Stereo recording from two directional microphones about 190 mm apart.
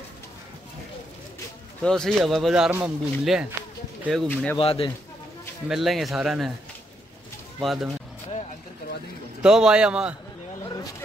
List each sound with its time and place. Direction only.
1.8 s speech: 5° left (ahead or behind)
4.6 s speech: 30° left (ahead or behind)
5.7 s speech: centre (ahead or behind)
7.6 s speech: centre (ahead or behind)
9.4 s speech: 5° right (ahead or behind)
10.6 s a sound: 15° left (ahead or behind)